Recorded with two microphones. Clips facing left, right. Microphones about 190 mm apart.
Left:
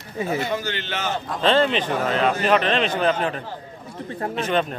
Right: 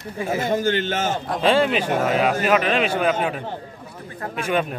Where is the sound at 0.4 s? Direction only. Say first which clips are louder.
Right 5 dB; 45° right (ahead or behind).